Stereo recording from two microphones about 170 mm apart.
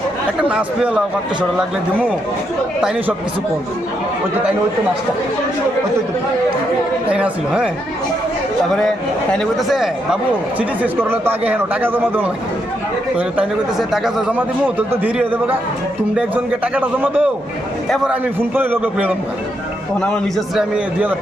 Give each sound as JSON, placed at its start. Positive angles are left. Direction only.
{"t": 0.4, "sound": "a man's voice", "side_deg": -5}
{"t": 7.1, "sound": "a man's voice", "side_deg": -5}
{"t": 9.3, "sound": "speech", "side_deg": 0}
{"t": 11.0, "sound": "a man's voice", "side_deg": -10}
{"t": 20.6, "sound": "a man's voice", "side_deg": -10}